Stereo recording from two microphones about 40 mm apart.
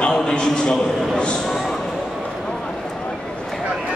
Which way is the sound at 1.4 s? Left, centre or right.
Centre.